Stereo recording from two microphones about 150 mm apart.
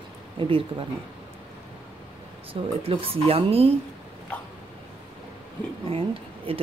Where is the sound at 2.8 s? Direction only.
40° right (ahead or behind).